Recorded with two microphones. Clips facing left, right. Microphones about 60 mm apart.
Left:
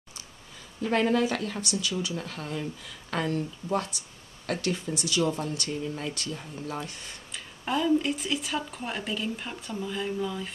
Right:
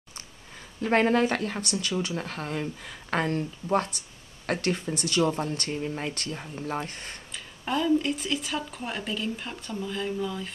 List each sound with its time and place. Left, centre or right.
0.8 s speech: right
7.3 s speech: centre